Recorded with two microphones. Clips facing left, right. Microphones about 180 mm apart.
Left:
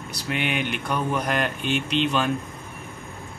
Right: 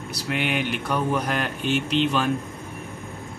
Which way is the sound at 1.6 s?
45° right (ahead or behind).